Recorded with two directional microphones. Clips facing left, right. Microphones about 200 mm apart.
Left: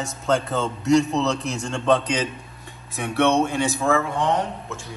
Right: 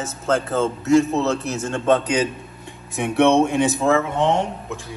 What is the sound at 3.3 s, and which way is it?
Speech, 20° right (ahead or behind).